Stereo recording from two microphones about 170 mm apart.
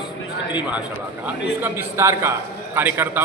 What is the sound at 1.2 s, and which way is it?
A man's voice, 15° right (ahead or behind).